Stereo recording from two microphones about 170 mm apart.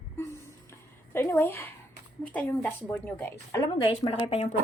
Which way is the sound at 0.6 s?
15° left (ahead or behind).